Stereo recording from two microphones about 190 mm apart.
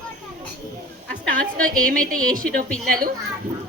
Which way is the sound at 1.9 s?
45° right (ahead or behind).